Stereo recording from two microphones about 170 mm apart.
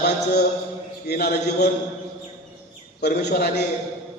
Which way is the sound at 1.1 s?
75° left (ahead or behind).